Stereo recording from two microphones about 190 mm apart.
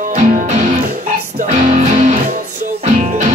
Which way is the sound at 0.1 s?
40° right (ahead or behind).